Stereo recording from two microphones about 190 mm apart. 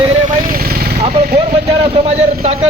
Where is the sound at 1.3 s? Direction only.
30° right (ahead or behind).